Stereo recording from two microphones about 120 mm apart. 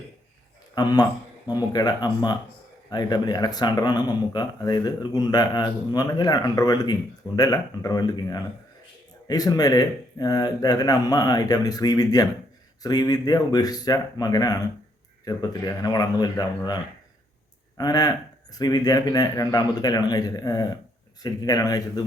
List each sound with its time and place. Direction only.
0.8 s speech: 35° left (ahead or behind)